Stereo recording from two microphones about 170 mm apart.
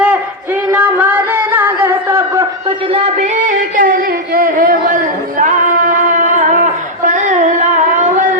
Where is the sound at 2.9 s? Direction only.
40° right (ahead or behind).